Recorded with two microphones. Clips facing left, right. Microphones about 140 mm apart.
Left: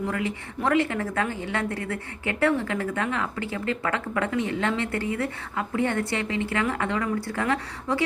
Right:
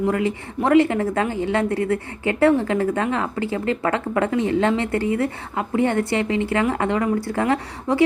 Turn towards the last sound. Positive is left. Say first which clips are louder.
# right 5 dB
turn(degrees=-30)  # may be behind; listen again after turning